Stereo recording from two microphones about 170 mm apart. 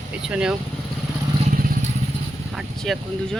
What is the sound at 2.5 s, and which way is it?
Speech, centre (ahead or behind).